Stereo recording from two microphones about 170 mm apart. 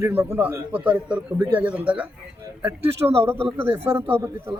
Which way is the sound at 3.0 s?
15° right (ahead or behind).